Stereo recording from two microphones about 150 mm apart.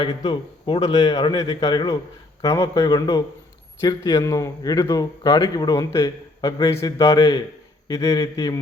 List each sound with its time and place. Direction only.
0.3 s speech: 30° left (ahead or behind)